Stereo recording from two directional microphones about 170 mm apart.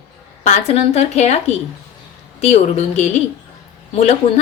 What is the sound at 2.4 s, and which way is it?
A woman's voice, 40° left (ahead or behind).